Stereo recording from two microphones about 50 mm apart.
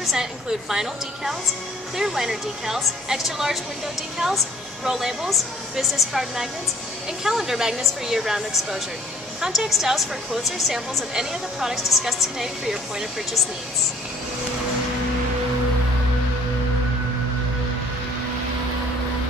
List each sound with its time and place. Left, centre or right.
0.0 s speech: centre
4.8 s a woman's voice: centre